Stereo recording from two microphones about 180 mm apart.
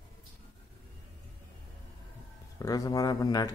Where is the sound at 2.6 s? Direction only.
20° left (ahead or behind).